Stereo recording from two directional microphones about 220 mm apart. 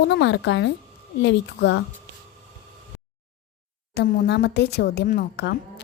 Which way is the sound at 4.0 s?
45° left (ahead or behind).